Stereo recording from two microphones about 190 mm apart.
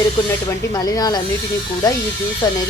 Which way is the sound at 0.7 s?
20° left (ahead or behind).